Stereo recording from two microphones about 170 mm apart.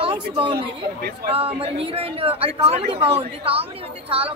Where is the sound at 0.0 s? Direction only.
30° right (ahead or behind).